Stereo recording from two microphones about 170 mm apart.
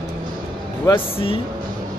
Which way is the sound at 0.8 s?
30° left (ahead or behind).